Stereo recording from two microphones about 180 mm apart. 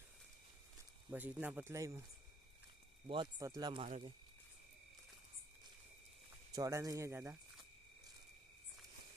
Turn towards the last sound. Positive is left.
turn(degrees=-15)  # may be behind; listen again after turning